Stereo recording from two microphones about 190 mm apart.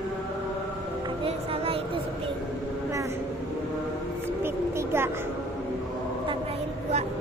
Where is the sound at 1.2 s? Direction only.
30° right (ahead or behind).